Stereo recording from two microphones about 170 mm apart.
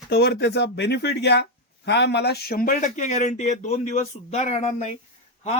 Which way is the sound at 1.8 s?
90° left.